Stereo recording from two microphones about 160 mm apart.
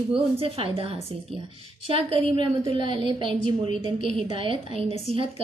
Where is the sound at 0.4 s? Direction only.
35° right (ahead or behind).